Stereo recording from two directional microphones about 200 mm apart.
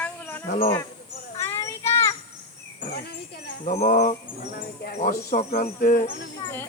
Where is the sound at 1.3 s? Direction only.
15° left (ahead or behind).